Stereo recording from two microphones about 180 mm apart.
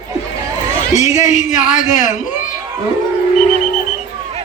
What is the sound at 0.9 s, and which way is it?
A man's voice, 40° left (ahead or behind).